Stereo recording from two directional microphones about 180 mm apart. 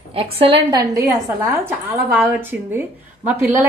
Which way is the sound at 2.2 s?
10° right (ahead or behind).